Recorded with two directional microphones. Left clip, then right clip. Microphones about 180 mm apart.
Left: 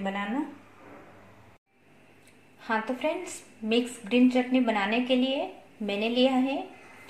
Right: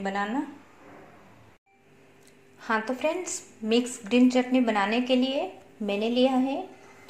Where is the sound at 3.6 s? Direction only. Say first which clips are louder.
Right 2 dB; 55° right (ahead or behind).